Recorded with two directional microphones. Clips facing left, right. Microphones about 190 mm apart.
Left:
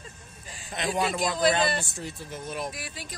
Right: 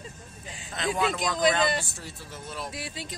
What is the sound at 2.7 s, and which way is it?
Speech, 25° right (ahead or behind).